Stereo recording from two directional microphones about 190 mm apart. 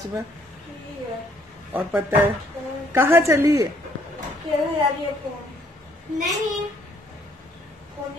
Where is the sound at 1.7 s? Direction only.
10° right (ahead or behind).